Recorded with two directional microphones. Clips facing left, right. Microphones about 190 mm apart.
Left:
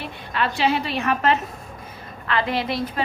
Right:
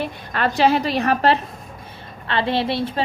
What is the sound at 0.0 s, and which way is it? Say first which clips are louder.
A woman's voice: right 3 dB; 45° right (ahead or behind).